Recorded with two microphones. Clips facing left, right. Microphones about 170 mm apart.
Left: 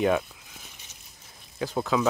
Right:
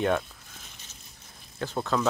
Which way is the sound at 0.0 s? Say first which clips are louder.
Left 2 dB; 5° left (ahead or behind).